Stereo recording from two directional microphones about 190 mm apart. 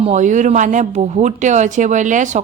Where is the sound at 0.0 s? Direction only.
40° right (ahead or behind).